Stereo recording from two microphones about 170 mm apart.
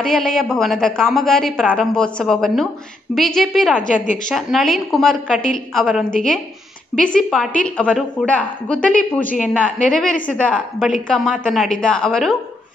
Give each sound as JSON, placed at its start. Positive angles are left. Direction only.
{"t": 0.0, "sound": "a woman's voice", "side_deg": 5}
{"t": 3.8, "sound": "a woman's voice", "side_deg": 50}
{"t": 4.3, "sound": "a woman's voice", "side_deg": 0}